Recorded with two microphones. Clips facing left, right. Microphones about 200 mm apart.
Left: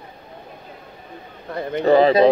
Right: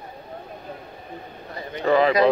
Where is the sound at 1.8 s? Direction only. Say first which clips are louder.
Left 4 dB; 30° left (ahead or behind).